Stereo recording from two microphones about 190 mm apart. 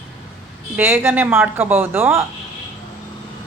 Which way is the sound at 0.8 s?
10° right (ahead or behind).